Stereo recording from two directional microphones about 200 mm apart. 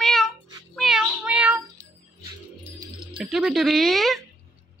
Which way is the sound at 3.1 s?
5° right (ahead or behind).